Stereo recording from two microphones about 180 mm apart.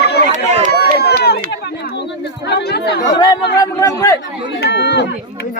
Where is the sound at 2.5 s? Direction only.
65° left (ahead or behind).